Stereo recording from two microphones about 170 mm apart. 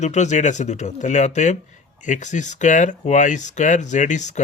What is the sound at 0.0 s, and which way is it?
Speech, 45° left (ahead or behind).